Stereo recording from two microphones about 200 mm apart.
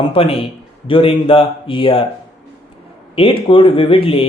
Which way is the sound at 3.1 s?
25° left (ahead or behind).